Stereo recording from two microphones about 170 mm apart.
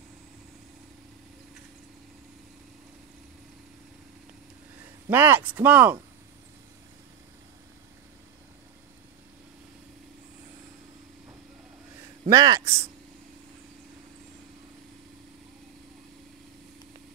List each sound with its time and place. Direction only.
5.1 s speech: 10° right (ahead or behind)
12.3 s speech: 20° right (ahead or behind)